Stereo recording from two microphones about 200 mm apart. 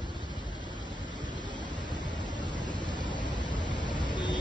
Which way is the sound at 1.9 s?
20° left (ahead or behind).